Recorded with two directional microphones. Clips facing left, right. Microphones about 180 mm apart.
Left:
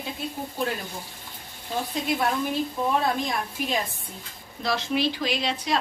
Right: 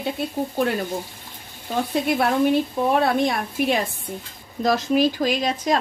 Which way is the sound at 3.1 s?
70° right (ahead or behind).